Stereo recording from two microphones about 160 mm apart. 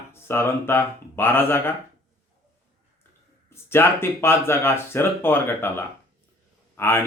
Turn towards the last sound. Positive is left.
turn(degrees=15)  # may be behind; listen again after turning